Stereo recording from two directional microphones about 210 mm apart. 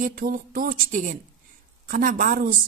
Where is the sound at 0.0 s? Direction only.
40° right (ahead or behind).